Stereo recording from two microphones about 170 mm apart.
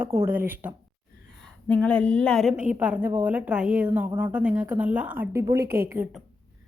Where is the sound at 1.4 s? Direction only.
5° left (ahead or behind); by 5.6 s 15° right (ahead or behind).